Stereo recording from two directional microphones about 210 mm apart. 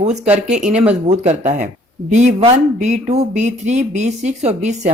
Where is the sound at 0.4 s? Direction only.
35° right (ahead or behind).